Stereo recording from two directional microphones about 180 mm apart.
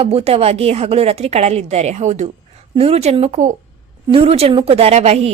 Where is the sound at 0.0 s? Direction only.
35° right (ahead or behind).